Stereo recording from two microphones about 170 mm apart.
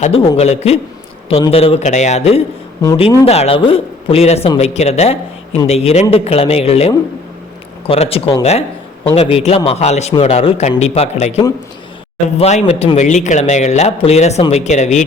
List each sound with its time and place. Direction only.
0.0 s a man's voice: 35° left (ahead or behind)